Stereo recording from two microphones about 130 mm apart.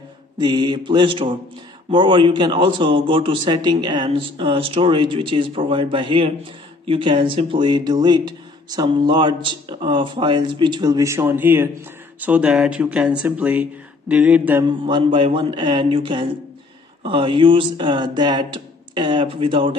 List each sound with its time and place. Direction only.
0.4 s a man's voice: 35° right (ahead or behind); by 14.6 s 10° right (ahead or behind)
14.6 s a man's voice: 35° right (ahead or behind)